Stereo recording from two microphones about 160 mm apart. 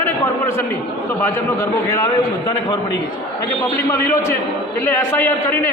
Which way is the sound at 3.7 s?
15° left (ahead or behind).